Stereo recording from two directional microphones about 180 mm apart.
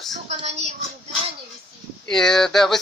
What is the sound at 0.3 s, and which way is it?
Speech, 40° right (ahead or behind).